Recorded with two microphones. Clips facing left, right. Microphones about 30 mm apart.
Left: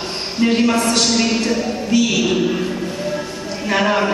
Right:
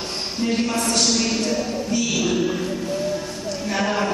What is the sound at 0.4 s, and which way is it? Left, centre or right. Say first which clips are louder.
Speech: left 7 dB; left.